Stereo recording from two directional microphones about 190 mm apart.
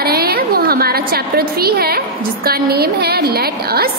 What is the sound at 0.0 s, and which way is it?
A woman's voice, 55° right (ahead or behind).